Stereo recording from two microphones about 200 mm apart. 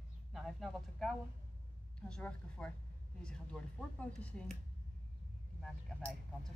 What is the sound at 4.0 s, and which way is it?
Speech, 5° left (ahead or behind).